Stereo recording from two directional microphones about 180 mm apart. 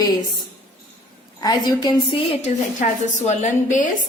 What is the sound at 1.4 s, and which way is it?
Speech, 20° left (ahead or behind).